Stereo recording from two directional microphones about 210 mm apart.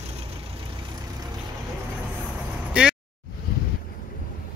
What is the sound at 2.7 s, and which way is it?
Vehicle, 5° right (ahead or behind).